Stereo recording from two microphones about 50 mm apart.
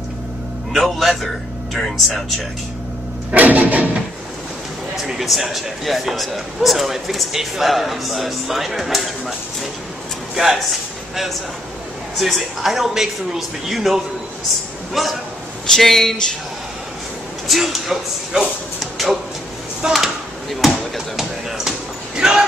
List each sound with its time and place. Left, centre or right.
0.7 s a man's voice: centre
3.3 s a sound: right
5.0 s a man's voice: centre
10.3 s speech: centre
12.2 s a man's voice: centre
17.5 s a man's voice: centre
18.8 s a sound: centre
19.9 s basketball bounce: centre